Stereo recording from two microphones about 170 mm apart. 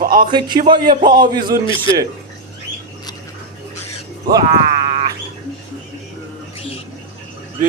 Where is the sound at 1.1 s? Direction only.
55° right (ahead or behind).